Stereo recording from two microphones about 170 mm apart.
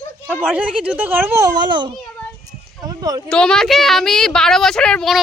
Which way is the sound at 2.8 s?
20° right (ahead or behind).